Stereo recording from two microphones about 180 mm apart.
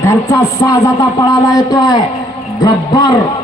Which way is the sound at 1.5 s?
20° left (ahead or behind).